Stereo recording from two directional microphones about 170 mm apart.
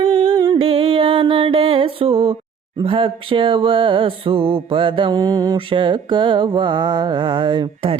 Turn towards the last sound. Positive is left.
turn(degrees=-30)  # may be behind; listen again after turning